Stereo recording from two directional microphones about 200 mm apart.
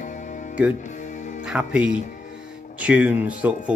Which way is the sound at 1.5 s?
5° right (ahead or behind).